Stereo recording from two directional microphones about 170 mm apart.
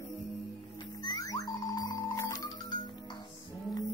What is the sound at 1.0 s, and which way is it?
Music, 20° left (ahead or behind).